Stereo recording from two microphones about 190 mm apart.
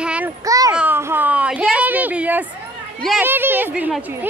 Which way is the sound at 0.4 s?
15° right (ahead or behind).